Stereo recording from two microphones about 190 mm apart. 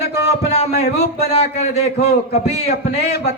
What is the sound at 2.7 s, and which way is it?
Speech, 60° left (ahead or behind).